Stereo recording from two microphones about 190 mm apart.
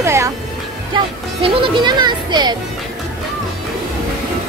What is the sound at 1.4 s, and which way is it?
Speech, 25° right (ahead or behind).